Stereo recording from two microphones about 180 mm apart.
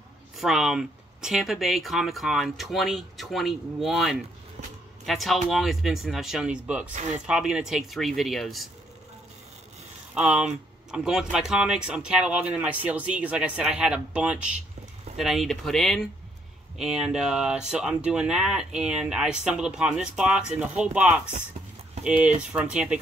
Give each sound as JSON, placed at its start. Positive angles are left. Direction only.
{"t": 0.4, "sound": "speech", "side_deg": 0}
{"t": 6.9, "sound": "speech", "side_deg": -40}
{"t": 7.2, "sound": "speech", "side_deg": -5}
{"t": 10.1, "sound": "speech", "side_deg": -5}